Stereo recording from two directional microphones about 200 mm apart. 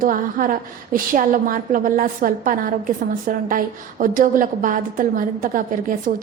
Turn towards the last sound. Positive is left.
turn(degrees=-40)  # may be behind; listen again after turning